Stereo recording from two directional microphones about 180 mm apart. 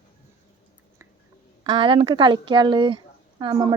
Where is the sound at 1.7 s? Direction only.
30° right (ahead or behind).